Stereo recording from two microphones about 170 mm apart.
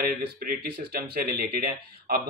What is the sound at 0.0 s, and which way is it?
Speech, 60° right (ahead or behind).